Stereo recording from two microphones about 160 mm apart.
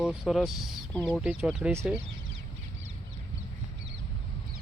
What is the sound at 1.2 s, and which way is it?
Speech, 5° right (ahead or behind).